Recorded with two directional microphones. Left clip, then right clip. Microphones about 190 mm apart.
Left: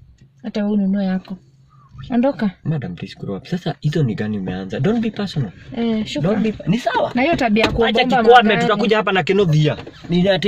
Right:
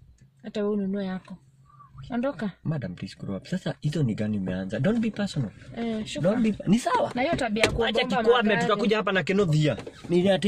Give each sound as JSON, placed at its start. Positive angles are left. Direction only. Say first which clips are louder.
{"t": 0.4, "sound": "speech", "louder": "left 6 dB", "side_deg": 20}
{"t": 2.7, "sound": "speech", "louder": "left 7 dB", "side_deg": -10}
{"t": 5.8, "sound": "speech", "louder": "left 10 dB", "side_deg": 20}
{"t": 6.8, "sound": "speech", "louder": "left 7 dB", "side_deg": -35}
{"t": 7.2, "sound": "speech", "louder": "left 10 dB", "side_deg": 25}
{"t": 7.8, "sound": "speech", "louder": "left 12 dB", "side_deg": -10}